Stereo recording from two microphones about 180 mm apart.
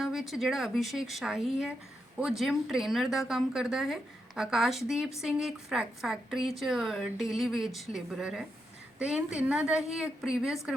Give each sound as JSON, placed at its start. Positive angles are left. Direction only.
{"t": 0.0, "sound": "a woman's voice", "side_deg": 0}